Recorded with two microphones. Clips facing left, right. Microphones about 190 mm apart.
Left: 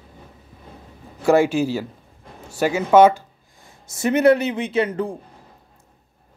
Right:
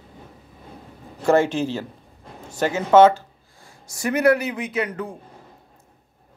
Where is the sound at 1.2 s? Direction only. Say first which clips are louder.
Left 2 dB; 10° left (ahead or behind); by 5.1 s 30° left (ahead or behind).